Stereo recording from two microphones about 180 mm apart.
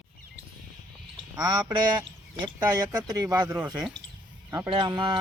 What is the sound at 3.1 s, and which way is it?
Speech, 20° right (ahead or behind).